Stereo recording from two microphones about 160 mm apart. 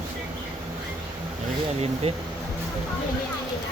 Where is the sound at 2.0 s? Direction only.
40° right (ahead or behind).